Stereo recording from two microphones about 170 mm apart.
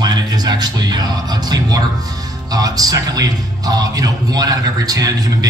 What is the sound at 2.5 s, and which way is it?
A man's voice, 20° right (ahead or behind).